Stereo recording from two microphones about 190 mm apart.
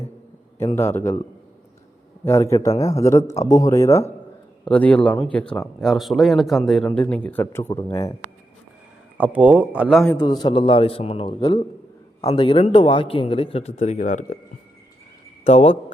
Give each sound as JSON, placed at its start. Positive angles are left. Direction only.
{"t": 0.6, "sound": "speech", "side_deg": 15}
{"t": 2.2, "sound": "speech", "side_deg": 15}
{"t": 9.1, "sound": "speech", "side_deg": -10}
{"t": 10.2, "sound": "a man's voice", "side_deg": 20}
{"t": 15.4, "sound": "speech", "side_deg": 30}